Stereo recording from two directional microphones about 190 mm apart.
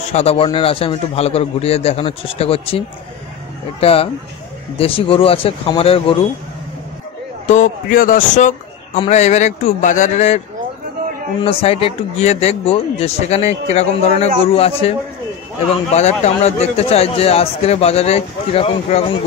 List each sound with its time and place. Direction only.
0.0 s a man's voice: 35° left (ahead or behind)
3.8 s a man's voice: 30° left (ahead or behind)
7.4 s a man's voice: 40° left (ahead or behind)
11.4 s a man's voice: 30° left (ahead or behind)